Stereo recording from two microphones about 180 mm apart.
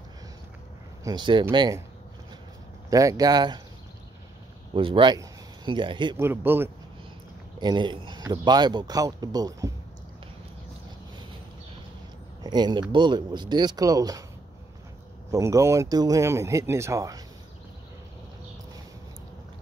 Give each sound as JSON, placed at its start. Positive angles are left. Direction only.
{"t": 1.0, "sound": "speech", "side_deg": -25}
{"t": 2.9, "sound": "speech", "side_deg": -20}
{"t": 4.7, "sound": "speech", "side_deg": -30}
{"t": 6.1, "sound": "speech", "side_deg": -10}
{"t": 7.6, "sound": "speech", "side_deg": -25}
{"t": 12.4, "sound": "speech", "side_deg": -25}
{"t": 15.3, "sound": "speech", "side_deg": -15}